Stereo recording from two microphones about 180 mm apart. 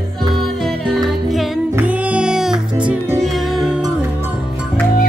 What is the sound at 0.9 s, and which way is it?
Music, centre (ahead or behind).